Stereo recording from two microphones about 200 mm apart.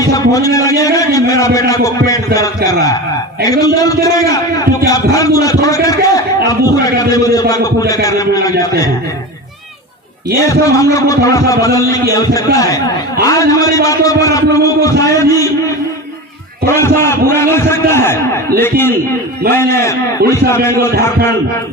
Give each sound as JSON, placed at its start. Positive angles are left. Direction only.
{"t": 0.0, "sound": "a man's voice", "side_deg": 15}
{"t": 10.5, "sound": "a man's voice", "side_deg": 15}
{"t": 16.6, "sound": "a man's voice", "side_deg": 15}